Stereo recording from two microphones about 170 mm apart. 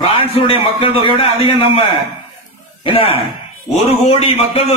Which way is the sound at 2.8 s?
35° left (ahead or behind).